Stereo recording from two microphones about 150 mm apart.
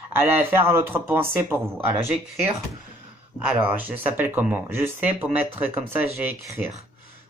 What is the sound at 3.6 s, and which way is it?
Speech, 10° right (ahead or behind).